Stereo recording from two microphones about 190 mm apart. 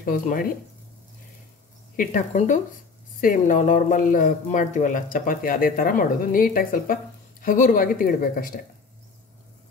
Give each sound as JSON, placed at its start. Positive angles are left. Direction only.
{"t": 0.0, "sound": "speech", "side_deg": 45}
{"t": 2.0, "sound": "speech", "side_deg": 40}